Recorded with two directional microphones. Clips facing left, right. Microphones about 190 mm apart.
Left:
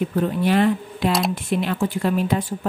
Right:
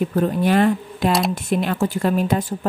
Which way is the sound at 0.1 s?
45° right (ahead or behind).